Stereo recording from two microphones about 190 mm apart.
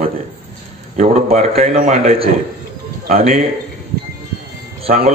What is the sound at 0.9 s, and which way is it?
A man's voice, 40° right (ahead or behind).